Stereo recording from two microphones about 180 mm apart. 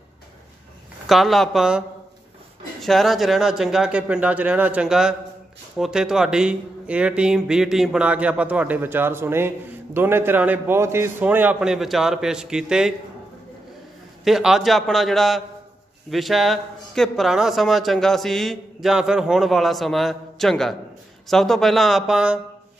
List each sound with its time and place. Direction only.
1.0 s a man's voice: centre (ahead or behind)
14.2 s a man's voice: centre (ahead or behind)